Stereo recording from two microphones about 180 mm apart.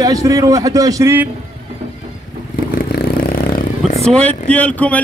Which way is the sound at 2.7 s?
55° left (ahead or behind).